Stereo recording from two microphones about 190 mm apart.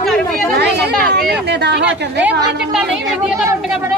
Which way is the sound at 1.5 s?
60° right (ahead or behind).